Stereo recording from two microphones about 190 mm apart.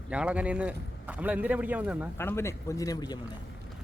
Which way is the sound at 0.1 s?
5° right (ahead or behind).